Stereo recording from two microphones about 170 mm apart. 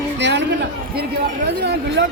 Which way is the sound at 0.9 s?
65° right (ahead or behind).